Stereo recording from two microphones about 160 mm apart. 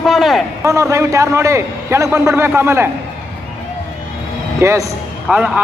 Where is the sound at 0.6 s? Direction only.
20° right (ahead or behind).